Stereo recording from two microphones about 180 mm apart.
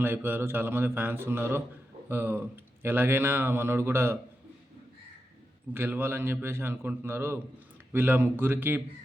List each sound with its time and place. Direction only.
0.0 s speech: 10° right (ahead or behind)
5.7 s speech: 10° right (ahead or behind)